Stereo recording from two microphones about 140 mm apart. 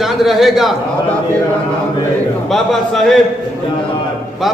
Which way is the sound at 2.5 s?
Centre (ahead or behind).